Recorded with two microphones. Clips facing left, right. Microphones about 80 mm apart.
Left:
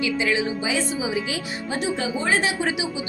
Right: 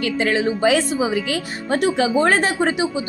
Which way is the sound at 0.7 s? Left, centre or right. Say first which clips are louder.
Right 6 dB; right.